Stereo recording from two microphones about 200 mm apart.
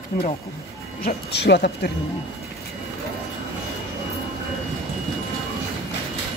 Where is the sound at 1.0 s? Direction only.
55° left (ahead or behind).